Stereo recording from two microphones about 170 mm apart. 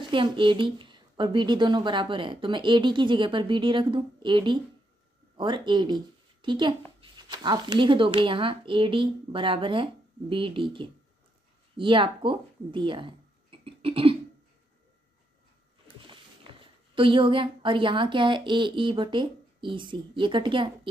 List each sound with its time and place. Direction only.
0.0 s speech: 30° right (ahead or behind)
16.9 s speech: 30° right (ahead or behind)